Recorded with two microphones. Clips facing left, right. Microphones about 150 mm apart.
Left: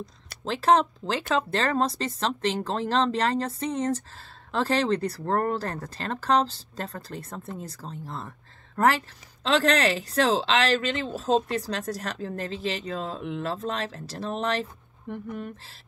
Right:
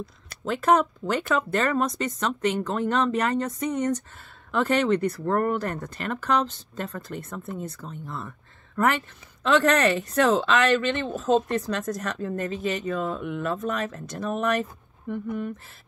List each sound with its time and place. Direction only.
0.5 s speech: 30° left (ahead or behind)